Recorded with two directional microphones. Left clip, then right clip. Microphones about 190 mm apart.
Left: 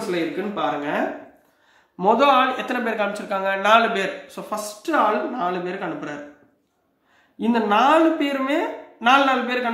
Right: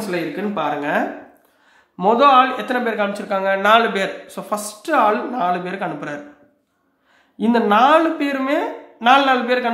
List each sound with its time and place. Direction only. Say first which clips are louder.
0.6 s speech: right 4 dB; 40° right (ahead or behind)
2.0 s speech: right 4 dB; 20° right (ahead or behind); by 6.1 s 35° right (ahead or behind)
7.3 s speech: right 4 dB; 30° right (ahead or behind)